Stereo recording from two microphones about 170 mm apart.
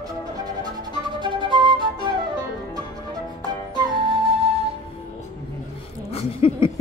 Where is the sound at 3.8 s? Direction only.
30° right (ahead or behind).